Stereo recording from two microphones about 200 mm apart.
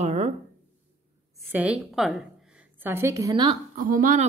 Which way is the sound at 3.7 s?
45° right (ahead or behind).